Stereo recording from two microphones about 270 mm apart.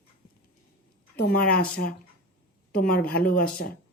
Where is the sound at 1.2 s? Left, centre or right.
Left.